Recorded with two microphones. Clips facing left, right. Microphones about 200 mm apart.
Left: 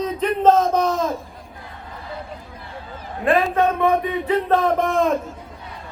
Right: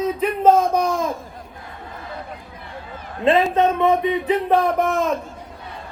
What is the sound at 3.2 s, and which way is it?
Speech, 20° right (ahead or behind).